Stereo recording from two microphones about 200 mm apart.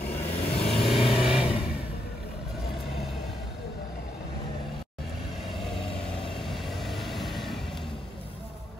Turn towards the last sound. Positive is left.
turn(degrees=0)  # may be behind; listen again after turning